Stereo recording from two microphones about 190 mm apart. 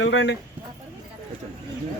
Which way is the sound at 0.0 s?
70° left (ahead or behind).